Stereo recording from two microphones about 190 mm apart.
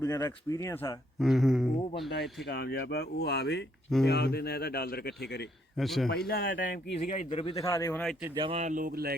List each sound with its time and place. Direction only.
0.0 s speech: 15° left (ahead or behind)
1.2 s a sound: centre (ahead or behind)
2.5 s speech: 55° left (ahead or behind)
5.7 s a sound: centre (ahead or behind)
6.1 s speech: 55° left (ahead or behind)
7.0 s speech: 40° left (ahead or behind)
7.3 s a man's voice: 30° left (ahead or behind)
7.6 s speech: 15° left (ahead or behind)
8.4 s speech: 30° right (ahead or behind); by 9.1 s 50° right (ahead or behind)